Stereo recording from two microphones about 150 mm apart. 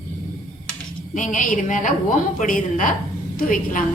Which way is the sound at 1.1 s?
55° left (ahead or behind).